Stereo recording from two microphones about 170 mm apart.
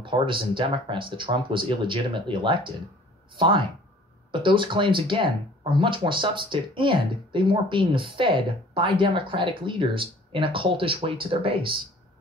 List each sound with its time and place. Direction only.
0.0 s speech: 30° right (ahead or behind)